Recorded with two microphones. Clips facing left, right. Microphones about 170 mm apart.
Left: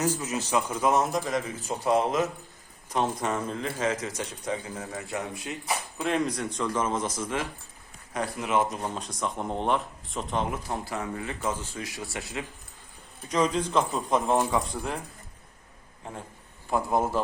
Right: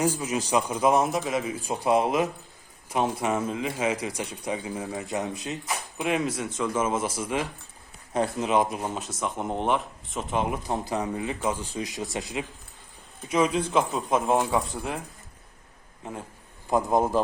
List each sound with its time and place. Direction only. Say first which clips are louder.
0.0 s a man's voice: right 2 dB; 10° right (ahead or behind)
6.0 s a man's voice: right 1 dB; 10° right (ahead or behind)
8.1 s speech: right 3 dB; 25° right (ahead or behind); by 10.4 s centre (ahead or behind)
10.4 s a man's voice: right 3 dB; 20° right (ahead or behind)
16.6 s a man's voice: right 3 dB; 20° right (ahead or behind)